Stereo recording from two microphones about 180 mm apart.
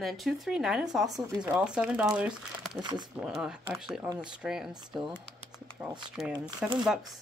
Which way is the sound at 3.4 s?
5° right (ahead or behind).